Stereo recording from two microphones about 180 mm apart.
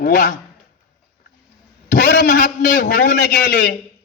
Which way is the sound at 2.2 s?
50° left (ahead or behind).